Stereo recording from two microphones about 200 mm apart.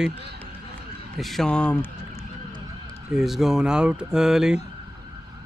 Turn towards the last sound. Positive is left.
turn(degrees=-5)  # may be behind; listen again after turning